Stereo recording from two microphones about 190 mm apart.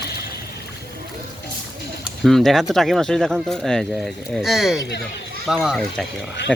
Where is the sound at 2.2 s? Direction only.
Centre (ahead or behind).